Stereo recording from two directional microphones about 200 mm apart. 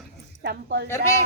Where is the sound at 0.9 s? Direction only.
15° left (ahead or behind).